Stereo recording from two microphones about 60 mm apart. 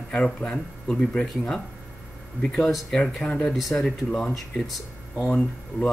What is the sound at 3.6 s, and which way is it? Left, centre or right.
Speech, centre.